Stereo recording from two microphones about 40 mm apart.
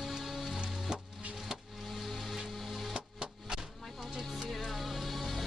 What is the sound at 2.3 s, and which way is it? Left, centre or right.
Music, centre.